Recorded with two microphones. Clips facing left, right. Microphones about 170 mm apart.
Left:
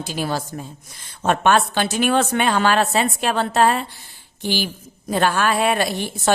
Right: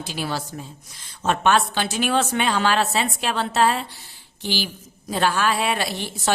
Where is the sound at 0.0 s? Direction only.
45° left (ahead or behind).